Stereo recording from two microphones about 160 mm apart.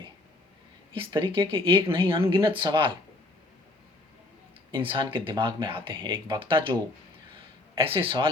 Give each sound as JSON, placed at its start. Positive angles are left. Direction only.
{"t": 0.9, "sound": "speech", "side_deg": -35}
{"t": 4.7, "sound": "speech", "side_deg": -30}
{"t": 7.8, "sound": "speech", "side_deg": -35}